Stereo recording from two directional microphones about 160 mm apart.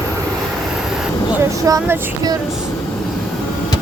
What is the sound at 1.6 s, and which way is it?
Female singing, 20° right (ahead or behind).